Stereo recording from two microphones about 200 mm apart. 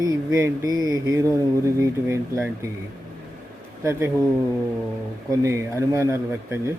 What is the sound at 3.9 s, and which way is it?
Speech, 10° right (ahead or behind).